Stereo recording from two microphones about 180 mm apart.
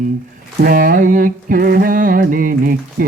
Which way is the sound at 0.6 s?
50° right (ahead or behind).